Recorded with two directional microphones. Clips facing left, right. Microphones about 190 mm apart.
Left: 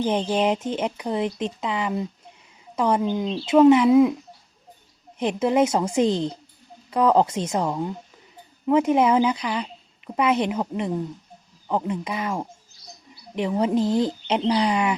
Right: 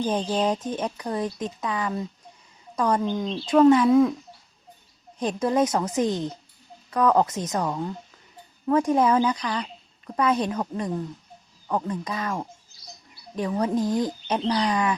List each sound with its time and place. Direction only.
0.0 s speech: 25° left (ahead or behind)
0.3 s a woman's voice: 10° left (ahead or behind)
0.5 s a woman's voice: 25° left (ahead or behind)
5.2 s speech: 20° left (ahead or behind)
5.6 s a woman's voice: 10° left (ahead or behind)
6.0 s a woman's voice: 30° left (ahead or behind)
7.5 s a woman's voice: 10° left (ahead or behind)
10.2 s a woman's voice: 25° left (ahead or behind)
13.7 s speech: 25° left (ahead or behind)
14.4 s a woman's voice: 10° left (ahead or behind)